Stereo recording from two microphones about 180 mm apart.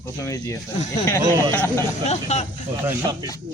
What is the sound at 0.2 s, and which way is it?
Speech, 15° left (ahead or behind).